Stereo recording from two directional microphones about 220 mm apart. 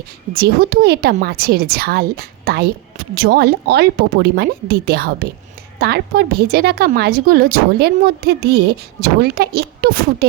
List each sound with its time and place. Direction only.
0.3 s a woman's voice: 45° right (ahead or behind)